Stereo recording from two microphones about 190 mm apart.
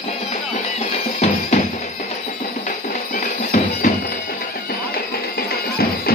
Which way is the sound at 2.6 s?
45° left (ahead or behind).